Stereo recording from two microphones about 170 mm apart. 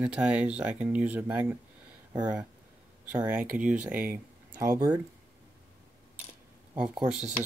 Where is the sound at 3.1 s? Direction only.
10° right (ahead or behind).